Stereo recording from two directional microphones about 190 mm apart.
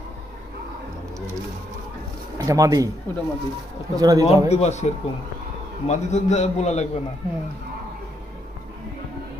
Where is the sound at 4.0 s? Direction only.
20° right (ahead or behind).